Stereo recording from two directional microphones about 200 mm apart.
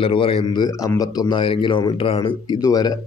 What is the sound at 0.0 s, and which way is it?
A man's voice, 25° left (ahead or behind).